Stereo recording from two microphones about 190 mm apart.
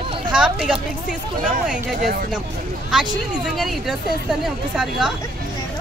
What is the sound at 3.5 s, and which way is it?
Speech, centre (ahead or behind).